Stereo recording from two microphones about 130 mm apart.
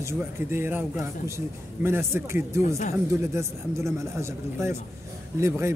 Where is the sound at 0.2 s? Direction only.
15° right (ahead or behind).